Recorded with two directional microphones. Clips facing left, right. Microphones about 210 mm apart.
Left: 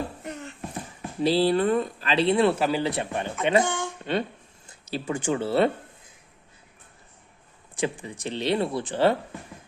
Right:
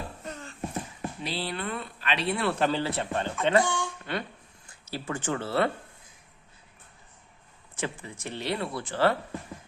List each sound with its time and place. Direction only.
0.3 s a sound: 20° left (ahead or behind)
1.2 s speech: 30° left (ahead or behind)
2.6 s speech: 10° left (ahead or behind)
3.7 s a sound: 20° left (ahead or behind)
4.7 s speech: 20° left (ahead or behind)
7.8 s speech: 15° left (ahead or behind)